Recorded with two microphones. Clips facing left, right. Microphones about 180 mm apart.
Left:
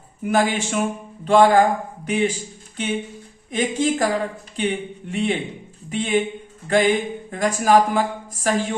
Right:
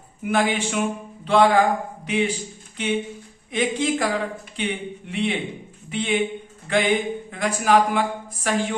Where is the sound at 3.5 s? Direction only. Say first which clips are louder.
Left 1 dB; 40° left (ahead or behind).